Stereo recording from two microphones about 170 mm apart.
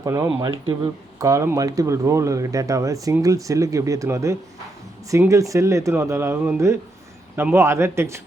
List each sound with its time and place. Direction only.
0.0 s speech: 20° right (ahead or behind)